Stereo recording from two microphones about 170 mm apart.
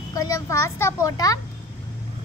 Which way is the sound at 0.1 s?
20° left (ahead or behind).